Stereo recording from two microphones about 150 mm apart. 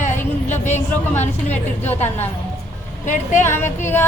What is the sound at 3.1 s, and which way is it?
Speech, 55° left (ahead or behind).